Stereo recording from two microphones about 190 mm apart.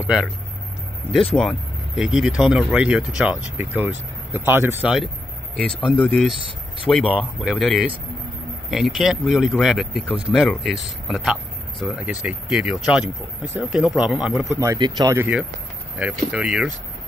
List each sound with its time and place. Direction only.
0.0 s speech: 5° right (ahead or behind)
1.3 s speech: centre (ahead or behind)
14.6 s speech: 20° right (ahead or behind)